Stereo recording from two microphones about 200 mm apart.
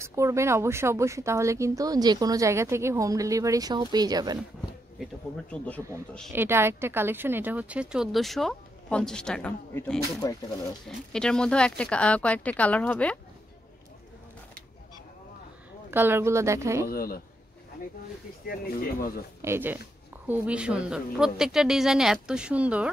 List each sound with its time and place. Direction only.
0.0 s speech: 15° right (ahead or behind)
4.9 s a woman's voice: 5° left (ahead or behind)
6.3 s a woman's voice: 10° right (ahead or behind); by 9.9 s 5° left (ahead or behind)
10.2 s speech: 15° left (ahead or behind)
11.1 s a woman's voice: 5° left (ahead or behind)
15.9 s speech: 10° right (ahead or behind)
16.8 s speech: 50° left (ahead or behind)
18.5 s speech: 50° left (ahead or behind)
19.4 s a woman's voice: 10° right (ahead or behind)